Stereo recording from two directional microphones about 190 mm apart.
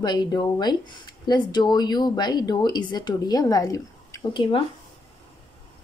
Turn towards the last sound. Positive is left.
turn(degrees=25)  # may be behind; listen again after turning